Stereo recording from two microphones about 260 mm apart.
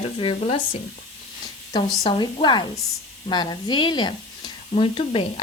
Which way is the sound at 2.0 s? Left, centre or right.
Centre.